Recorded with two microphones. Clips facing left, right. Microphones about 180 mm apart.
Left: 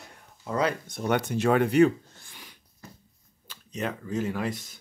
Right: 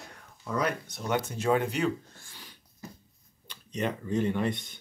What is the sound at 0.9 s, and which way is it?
Speech, 55° left (ahead or behind).